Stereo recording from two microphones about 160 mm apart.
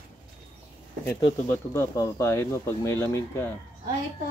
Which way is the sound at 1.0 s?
15° left (ahead or behind).